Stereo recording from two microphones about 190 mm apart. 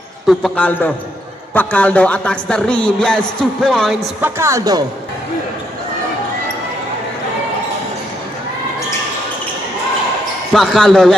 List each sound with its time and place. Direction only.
0.3 s a man's voice: 5° left (ahead or behind)
4.2 s a woman's voice: 15° right (ahead or behind)
10.5 s a man's voice: 5° left (ahead or behind)